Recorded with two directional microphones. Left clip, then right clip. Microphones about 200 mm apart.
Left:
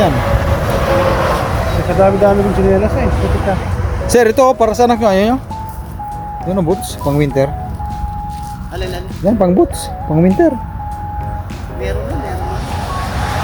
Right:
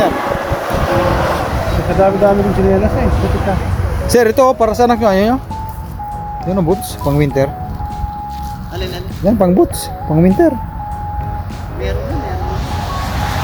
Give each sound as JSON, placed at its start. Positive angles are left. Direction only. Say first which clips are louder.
{"t": 0.2, "sound": "vehicle", "louder": "even", "side_deg": 45}
{"t": 0.8, "sound": "vehicle", "louder": "left 1 dB", "side_deg": 15}
{"t": 1.6, "sound": "speech", "louder": "left 1 dB", "side_deg": 0}
{"t": 4.1, "sound": "speech", "louder": "left 1 dB", "side_deg": 10}
{"t": 6.4, "sound": "speech", "louder": "even", "side_deg": 0}
{"t": 9.2, "sound": "speech", "louder": "even", "side_deg": 0}
{"t": 12.5, "sound": "vehicle", "louder": "even", "side_deg": 25}